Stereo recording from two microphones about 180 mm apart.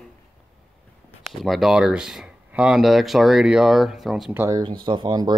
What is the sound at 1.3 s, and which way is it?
Speech, centre (ahead or behind).